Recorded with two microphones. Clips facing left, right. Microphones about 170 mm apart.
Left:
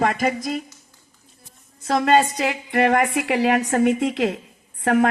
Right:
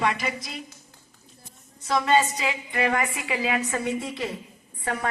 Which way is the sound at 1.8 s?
50° left (ahead or behind).